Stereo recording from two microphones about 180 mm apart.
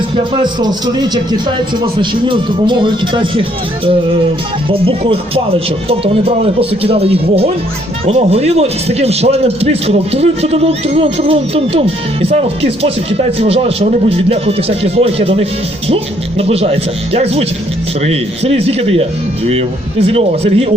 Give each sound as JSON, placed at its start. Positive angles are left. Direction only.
{"t": 0.3, "sound": "a man's voice", "side_deg": -25}
{"t": 4.7, "sound": "a man's voice", "side_deg": -30}